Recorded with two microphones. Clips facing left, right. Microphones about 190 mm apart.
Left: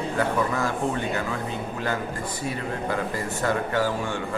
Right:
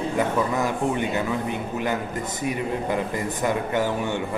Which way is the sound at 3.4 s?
20° right (ahead or behind).